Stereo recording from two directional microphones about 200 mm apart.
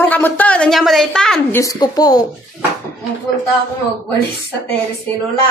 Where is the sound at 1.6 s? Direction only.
20° left (ahead or behind).